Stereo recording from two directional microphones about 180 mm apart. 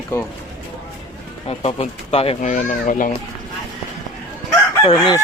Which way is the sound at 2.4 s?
45° left (ahead or behind).